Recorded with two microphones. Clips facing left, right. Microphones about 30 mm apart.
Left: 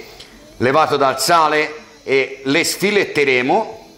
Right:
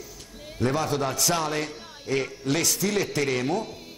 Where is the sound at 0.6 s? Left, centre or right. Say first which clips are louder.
Left 12 dB; left.